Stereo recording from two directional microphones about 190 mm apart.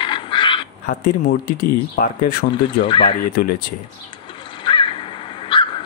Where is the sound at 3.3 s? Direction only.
50° left (ahead or behind).